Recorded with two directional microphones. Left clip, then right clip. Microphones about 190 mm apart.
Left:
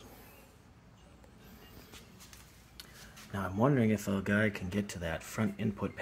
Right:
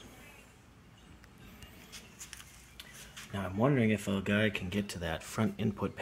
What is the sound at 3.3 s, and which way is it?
Speech, 5° right (ahead or behind).